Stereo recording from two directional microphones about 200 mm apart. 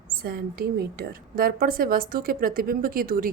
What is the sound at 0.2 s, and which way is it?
A woman's voice, 50° right (ahead or behind).